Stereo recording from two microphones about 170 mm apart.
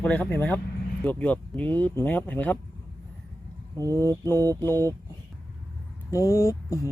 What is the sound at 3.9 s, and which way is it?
Speech, 15° left (ahead or behind).